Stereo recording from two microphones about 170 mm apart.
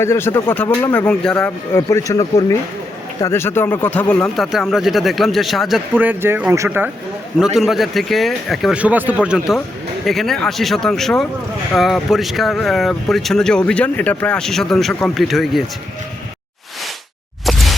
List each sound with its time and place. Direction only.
0.0 s speech: 15° left (ahead or behind)
1.7 s speech: 20° left (ahead or behind); by 15.6 s centre (ahead or behind)
17.4 s a sound: centre (ahead or behind)